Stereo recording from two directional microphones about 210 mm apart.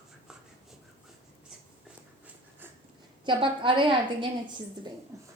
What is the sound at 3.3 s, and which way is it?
A woman's voice, 25° right (ahead or behind).